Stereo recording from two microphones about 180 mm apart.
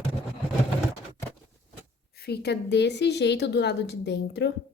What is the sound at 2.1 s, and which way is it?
A woman's voice, 60° left (ahead or behind).